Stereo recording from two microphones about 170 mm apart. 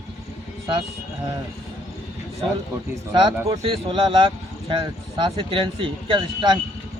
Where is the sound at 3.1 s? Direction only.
30° right (ahead or behind).